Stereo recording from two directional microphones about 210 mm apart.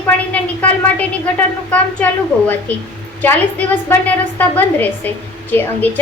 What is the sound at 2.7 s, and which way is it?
A woman's voice, 5° left (ahead or behind).